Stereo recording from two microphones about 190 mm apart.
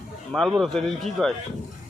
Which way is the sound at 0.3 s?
Centre (ahead or behind).